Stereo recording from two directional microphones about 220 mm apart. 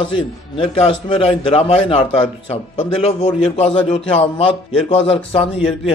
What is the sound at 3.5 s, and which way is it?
A man's voice, 25° left (ahead or behind).